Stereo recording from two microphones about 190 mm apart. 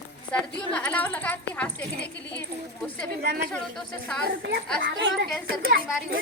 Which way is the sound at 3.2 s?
55° right (ahead or behind).